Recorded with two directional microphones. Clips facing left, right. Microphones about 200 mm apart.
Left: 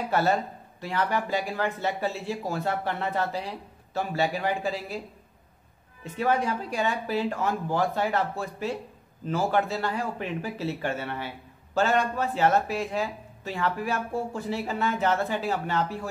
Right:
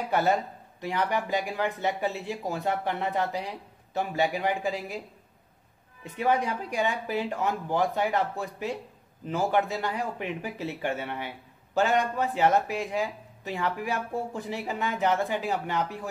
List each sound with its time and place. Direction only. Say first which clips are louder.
0.1 s speech: even; 15° right (ahead or behind)
6.1 s speech: left 1 dB; 15° right (ahead or behind)